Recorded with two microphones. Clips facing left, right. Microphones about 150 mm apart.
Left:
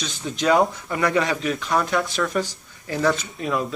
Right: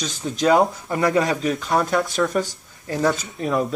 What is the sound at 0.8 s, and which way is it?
Speech, 25° right (ahead or behind).